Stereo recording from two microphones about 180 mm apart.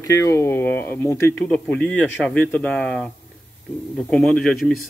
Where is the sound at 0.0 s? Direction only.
15° left (ahead or behind).